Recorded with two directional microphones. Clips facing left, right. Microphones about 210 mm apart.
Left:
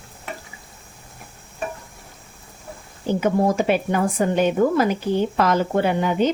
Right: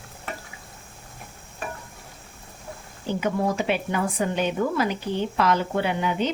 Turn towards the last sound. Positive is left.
turn(degrees=45)  # may be behind; listen again after turning